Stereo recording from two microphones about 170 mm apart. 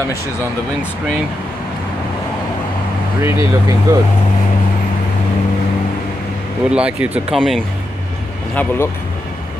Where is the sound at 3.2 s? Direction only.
15° right (ahead or behind).